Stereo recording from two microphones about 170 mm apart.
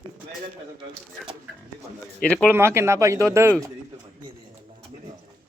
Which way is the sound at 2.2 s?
5° left (ahead or behind).